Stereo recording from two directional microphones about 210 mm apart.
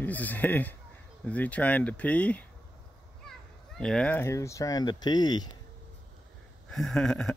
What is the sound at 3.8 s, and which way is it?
Speech, 5° left (ahead or behind).